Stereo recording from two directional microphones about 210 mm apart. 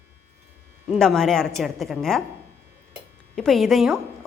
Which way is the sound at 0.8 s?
5° left (ahead or behind).